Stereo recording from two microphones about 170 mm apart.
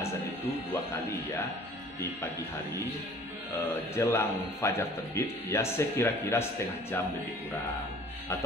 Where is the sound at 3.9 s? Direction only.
15° left (ahead or behind).